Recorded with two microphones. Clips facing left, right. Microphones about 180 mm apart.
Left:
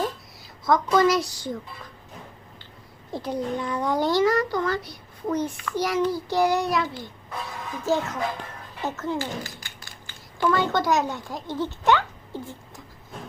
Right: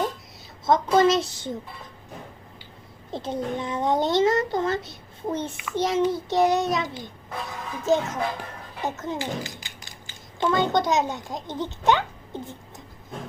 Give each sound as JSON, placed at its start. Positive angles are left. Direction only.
{"t": 0.6, "sound": "a child's voice", "side_deg": -25}
{"t": 3.1, "sound": "a child's voice", "side_deg": -25}
{"t": 7.9, "sound": "a child's voice", "side_deg": -20}